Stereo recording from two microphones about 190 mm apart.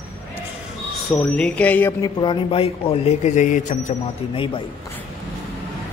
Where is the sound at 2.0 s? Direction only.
25° left (ahead or behind).